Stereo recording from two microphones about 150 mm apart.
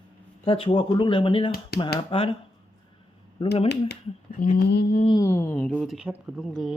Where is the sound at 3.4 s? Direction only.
40° left (ahead or behind).